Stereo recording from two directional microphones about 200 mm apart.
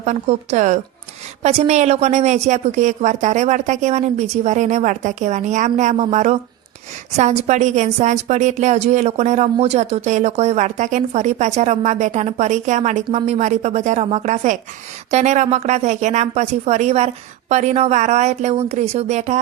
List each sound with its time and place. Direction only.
0.0 s a woman's voice: 35° right (ahead or behind)